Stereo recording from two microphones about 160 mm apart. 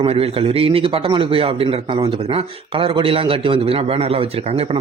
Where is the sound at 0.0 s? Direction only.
35° right (ahead or behind).